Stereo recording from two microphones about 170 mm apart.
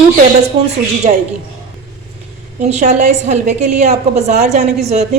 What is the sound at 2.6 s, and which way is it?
A woman's voice, 40° right (ahead or behind).